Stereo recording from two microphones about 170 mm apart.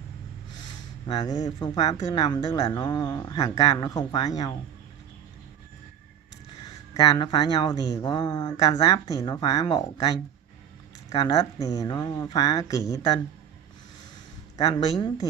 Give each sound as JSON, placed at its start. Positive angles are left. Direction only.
{"t": 1.0, "sound": "speech", "side_deg": 20}
{"t": 7.0, "sound": "speech", "side_deg": 25}
{"t": 14.6, "sound": "speech", "side_deg": 30}